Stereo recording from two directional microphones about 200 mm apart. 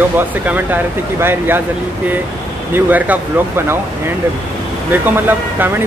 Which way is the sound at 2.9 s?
10° right (ahead or behind).